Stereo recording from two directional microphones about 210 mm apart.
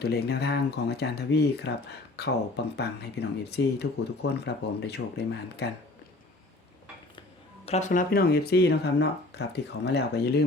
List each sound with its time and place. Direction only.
0.0 s speech: 50° left (ahead or behind)
7.6 s speech: 30° left (ahead or behind); by 10.4 s 50° left (ahead or behind)